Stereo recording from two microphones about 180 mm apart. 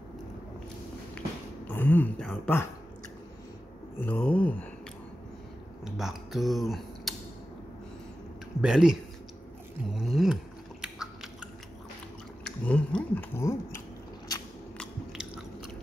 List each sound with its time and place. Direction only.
1.7 s speech: 10° left (ahead or behind)
4.0 s speech: 10° left (ahead or behind)
5.9 s speech: centre (ahead or behind)
8.5 s speech: 5° right (ahead or behind)
9.9 s a sound: centre (ahead or behind)
12.4 s speech: 5° left (ahead or behind)
14.8 s biting: 5° right (ahead or behind)